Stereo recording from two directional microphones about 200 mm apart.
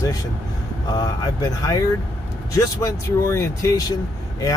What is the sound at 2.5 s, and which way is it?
Speech, 15° left (ahead or behind).